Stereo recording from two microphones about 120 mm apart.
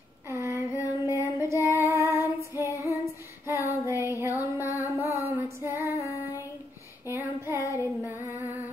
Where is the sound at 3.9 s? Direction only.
20° right (ahead or behind).